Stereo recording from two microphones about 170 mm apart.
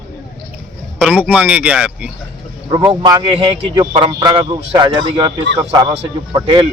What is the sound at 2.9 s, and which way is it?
A man's voice, 25° right (ahead or behind).